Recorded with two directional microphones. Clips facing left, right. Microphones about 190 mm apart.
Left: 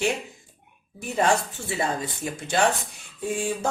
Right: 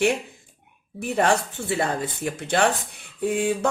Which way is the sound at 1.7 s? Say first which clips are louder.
Right 2 dB; 65° right (ahead or behind).